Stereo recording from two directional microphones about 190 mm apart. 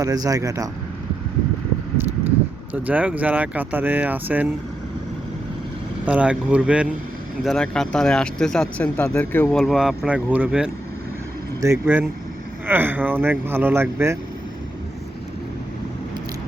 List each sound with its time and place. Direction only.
0.0 s speech: 20° right (ahead or behind)
2.7 s speech: 10° right (ahead or behind)
6.1 s speech: 5° right (ahead or behind)
9.6 s speech: centre (ahead or behind)